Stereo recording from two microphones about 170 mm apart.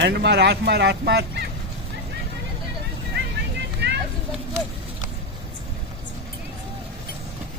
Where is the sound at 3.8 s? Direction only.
80° right.